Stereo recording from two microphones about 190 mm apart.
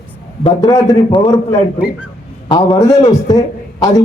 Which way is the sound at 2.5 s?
30° left (ahead or behind).